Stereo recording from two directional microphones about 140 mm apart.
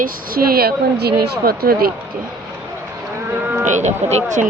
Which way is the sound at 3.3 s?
15° right (ahead or behind).